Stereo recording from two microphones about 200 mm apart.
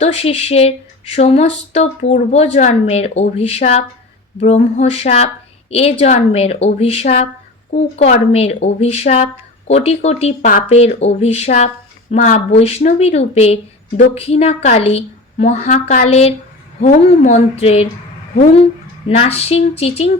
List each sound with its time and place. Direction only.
0.0 s speech: 30° left (ahead or behind)